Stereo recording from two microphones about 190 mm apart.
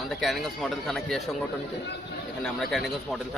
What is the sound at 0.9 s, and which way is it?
Speech, centre (ahead or behind).